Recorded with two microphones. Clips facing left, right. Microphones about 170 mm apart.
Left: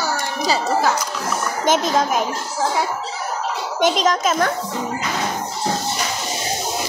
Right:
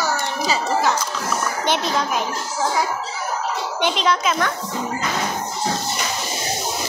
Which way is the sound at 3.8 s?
40° left (ahead or behind).